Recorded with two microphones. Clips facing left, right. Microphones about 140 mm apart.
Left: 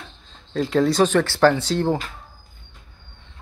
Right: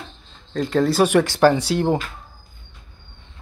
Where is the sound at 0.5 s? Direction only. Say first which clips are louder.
Even; centre (ahead or behind).